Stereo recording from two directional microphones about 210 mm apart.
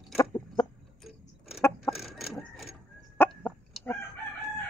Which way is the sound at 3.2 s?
5° left (ahead or behind).